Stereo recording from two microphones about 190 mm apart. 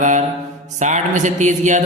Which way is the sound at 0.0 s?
40° right (ahead or behind).